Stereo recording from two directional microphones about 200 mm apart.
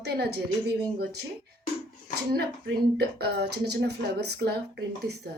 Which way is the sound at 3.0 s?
55° right (ahead or behind).